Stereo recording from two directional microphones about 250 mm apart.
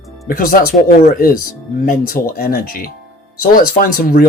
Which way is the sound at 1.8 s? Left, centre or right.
Left.